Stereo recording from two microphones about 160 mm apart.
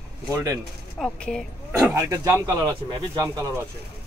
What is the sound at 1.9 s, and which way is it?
Speech, 20° right (ahead or behind).